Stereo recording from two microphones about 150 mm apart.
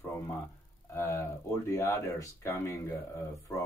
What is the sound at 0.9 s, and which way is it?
Speech, 20° left (ahead or behind).